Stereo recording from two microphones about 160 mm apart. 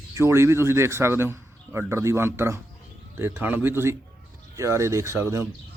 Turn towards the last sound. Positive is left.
turn(degrees=-20)  # may be behind; listen again after turning